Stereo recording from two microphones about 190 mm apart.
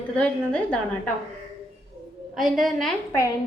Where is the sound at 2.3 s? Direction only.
Centre (ahead or behind).